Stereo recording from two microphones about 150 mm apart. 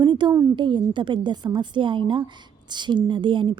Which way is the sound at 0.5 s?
30° right (ahead or behind).